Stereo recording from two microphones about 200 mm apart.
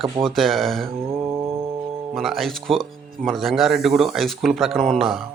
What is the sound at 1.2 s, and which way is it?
Mantra, 15° right (ahead or behind).